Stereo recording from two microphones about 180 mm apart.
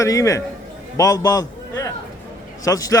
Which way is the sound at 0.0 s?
15° left (ahead or behind).